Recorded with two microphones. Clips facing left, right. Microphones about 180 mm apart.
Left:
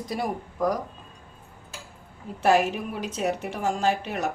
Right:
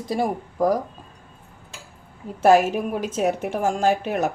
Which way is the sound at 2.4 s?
45° right (ahead or behind).